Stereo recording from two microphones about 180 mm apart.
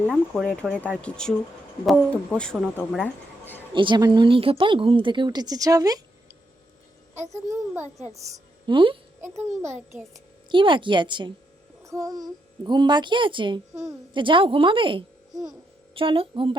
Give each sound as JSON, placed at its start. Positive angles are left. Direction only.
{"t": 0.1, "sound": "speech", "side_deg": 5}
{"t": 3.8, "sound": "a child's voice", "side_deg": -25}
{"t": 7.4, "sound": "a child's voice", "side_deg": -15}
{"t": 8.6, "sound": "a child's voice", "side_deg": -30}
{"t": 9.2, "sound": "a child's voice", "side_deg": -15}
{"t": 10.5, "sound": "a child's voice", "side_deg": -25}